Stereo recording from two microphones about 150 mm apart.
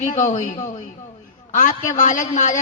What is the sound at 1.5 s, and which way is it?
A man's voice, 55° left (ahead or behind).